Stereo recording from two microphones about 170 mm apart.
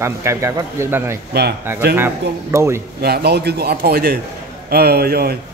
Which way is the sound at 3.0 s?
70° right (ahead or behind).